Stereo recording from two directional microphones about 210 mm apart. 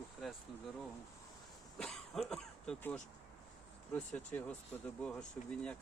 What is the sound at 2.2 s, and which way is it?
Speech, 5° left (ahead or behind).